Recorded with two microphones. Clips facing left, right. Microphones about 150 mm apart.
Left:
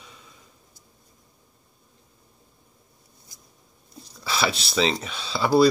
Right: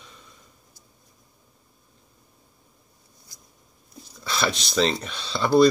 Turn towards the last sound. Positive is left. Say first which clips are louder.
# right 1 dB
turn(degrees=5)  # may be behind; listen again after turning